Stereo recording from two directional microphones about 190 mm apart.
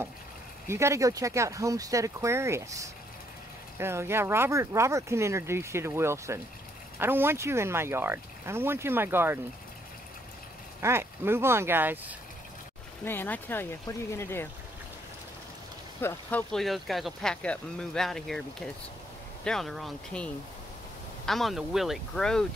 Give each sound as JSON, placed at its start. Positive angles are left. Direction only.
{"t": 0.7, "sound": "speech", "side_deg": -15}
{"t": 10.8, "sound": "speech", "side_deg": -15}
{"t": 13.0, "sound": "speech", "side_deg": 10}
{"t": 16.0, "sound": "speech", "side_deg": 10}
{"t": 19.4, "sound": "speech", "side_deg": 0}
{"t": 21.3, "sound": "speech", "side_deg": 0}